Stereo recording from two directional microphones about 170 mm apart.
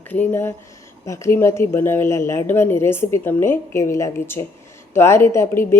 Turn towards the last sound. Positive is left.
turn(degrees=15)  # may be behind; listen again after turning